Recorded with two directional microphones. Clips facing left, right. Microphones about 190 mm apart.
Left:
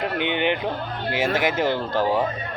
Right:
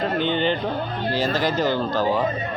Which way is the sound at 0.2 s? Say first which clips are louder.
Even; 65° left (ahead or behind).